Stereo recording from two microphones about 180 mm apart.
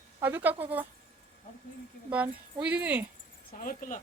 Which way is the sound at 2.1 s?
5° right (ahead or behind).